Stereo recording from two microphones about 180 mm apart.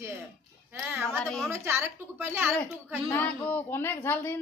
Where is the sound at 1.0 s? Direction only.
5° left (ahead or behind).